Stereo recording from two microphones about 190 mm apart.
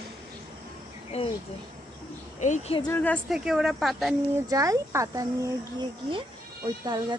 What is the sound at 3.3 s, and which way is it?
Speech, centre (ahead or behind).